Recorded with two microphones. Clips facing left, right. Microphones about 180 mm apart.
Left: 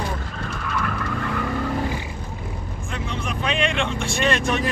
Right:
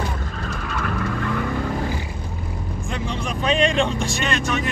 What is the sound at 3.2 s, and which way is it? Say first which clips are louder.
Vehicle: right 4 dB; 35° right (ahead or behind).